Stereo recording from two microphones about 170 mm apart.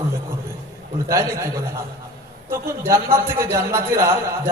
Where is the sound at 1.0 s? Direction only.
20° right (ahead or behind).